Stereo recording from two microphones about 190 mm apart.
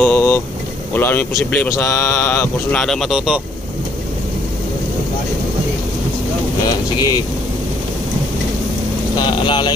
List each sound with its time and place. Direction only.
0.0 s vehicle: 10° left (ahead or behind)
0.9 s speech: 10° left (ahead or behind)
2.8 s speech: centre (ahead or behind)
7.0 s speech: 20° left (ahead or behind)
9.5 s speech: 25° left (ahead or behind)